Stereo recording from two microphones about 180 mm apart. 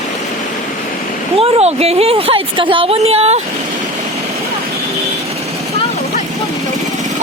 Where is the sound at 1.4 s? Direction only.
35° right (ahead or behind).